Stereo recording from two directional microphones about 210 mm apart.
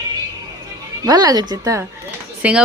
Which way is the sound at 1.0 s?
15° right (ahead or behind).